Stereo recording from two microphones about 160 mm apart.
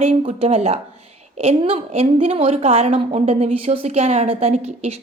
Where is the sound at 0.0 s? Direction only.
40° right (ahead or behind).